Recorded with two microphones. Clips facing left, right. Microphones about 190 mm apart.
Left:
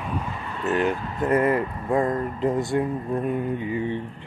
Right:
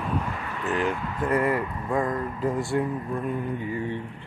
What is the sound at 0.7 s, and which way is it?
Speech, 20° left (ahead or behind).